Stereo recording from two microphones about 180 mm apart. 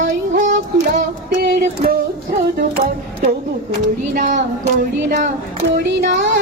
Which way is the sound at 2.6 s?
50° right (ahead or behind).